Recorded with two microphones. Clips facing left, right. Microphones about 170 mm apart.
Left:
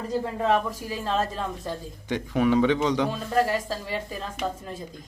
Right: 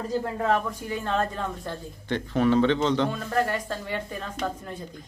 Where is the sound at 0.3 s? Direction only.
20° left (ahead or behind).